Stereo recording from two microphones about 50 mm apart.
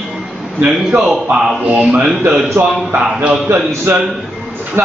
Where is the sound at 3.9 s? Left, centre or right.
Right.